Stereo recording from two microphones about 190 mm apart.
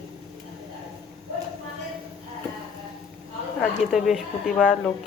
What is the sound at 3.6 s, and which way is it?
Speech, centre (ahead or behind).